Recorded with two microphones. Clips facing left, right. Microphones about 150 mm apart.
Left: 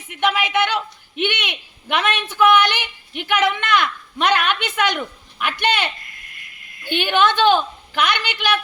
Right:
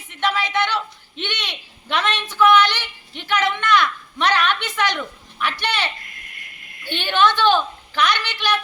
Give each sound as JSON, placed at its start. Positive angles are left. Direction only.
{"t": 0.1, "sound": "a man's voice", "side_deg": 15}